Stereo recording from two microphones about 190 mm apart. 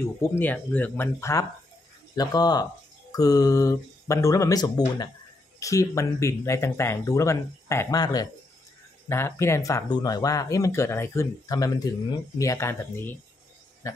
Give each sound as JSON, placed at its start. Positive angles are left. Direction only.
{"t": 0.0, "sound": "speech", "side_deg": 10}